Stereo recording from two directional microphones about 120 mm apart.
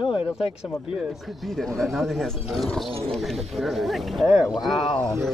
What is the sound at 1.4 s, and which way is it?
Speech, centre (ahead or behind).